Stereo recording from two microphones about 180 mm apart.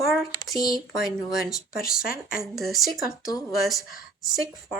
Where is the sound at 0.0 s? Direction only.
Centre (ahead or behind).